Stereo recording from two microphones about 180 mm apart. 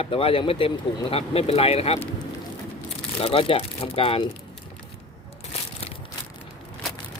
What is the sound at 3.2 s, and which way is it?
Speech, 30° left (ahead or behind).